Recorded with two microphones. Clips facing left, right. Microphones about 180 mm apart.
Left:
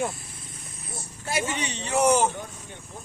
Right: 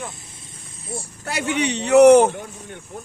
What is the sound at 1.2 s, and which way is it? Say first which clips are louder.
Speech: right 5 dB; 70° right (ahead or behind).